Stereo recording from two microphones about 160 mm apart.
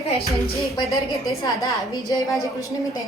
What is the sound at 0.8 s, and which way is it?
Speech, centre (ahead or behind).